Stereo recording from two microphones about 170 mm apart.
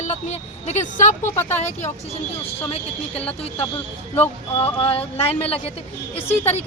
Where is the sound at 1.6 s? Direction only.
40° left (ahead or behind).